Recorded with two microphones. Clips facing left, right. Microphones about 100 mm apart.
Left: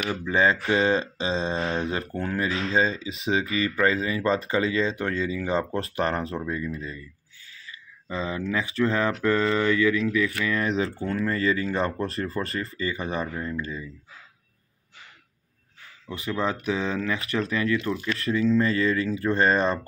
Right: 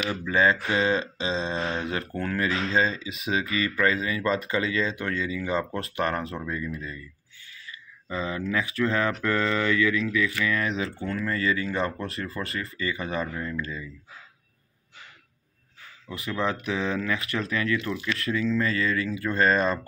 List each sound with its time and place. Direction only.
0.1 s speech: 30° left (ahead or behind)
8.1 s speech: 25° left (ahead or behind)
16.1 s speech: 25° left (ahead or behind)